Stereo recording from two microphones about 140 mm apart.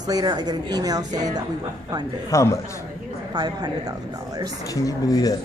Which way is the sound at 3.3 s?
30° right (ahead or behind).